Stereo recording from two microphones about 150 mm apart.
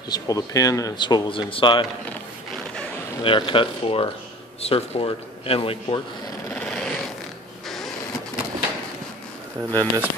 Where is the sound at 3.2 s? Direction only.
35° left (ahead or behind).